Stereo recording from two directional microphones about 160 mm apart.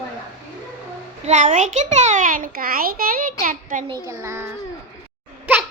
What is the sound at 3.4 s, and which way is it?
Speech, 55° right (ahead or behind).